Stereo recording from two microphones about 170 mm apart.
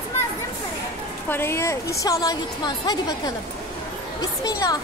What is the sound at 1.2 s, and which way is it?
A woman's voice, 15° left (ahead or behind).